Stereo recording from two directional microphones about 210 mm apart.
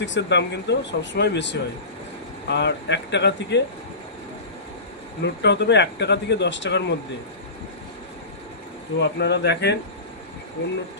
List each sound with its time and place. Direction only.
0.0 s speech: 55° left (ahead or behind)
5.2 s speech: 55° left (ahead or behind)
9.0 s speech: 55° left (ahead or behind)